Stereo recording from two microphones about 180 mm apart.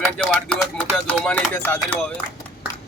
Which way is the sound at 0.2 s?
5° left (ahead or behind).